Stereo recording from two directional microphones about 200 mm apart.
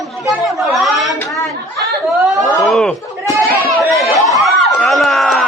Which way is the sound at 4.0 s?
Centre (ahead or behind).